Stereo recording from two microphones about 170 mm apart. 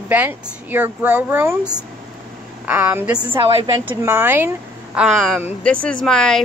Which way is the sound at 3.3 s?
35° right (ahead or behind).